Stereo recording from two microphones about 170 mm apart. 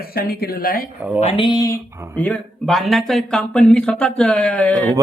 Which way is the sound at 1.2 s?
35° left (ahead or behind).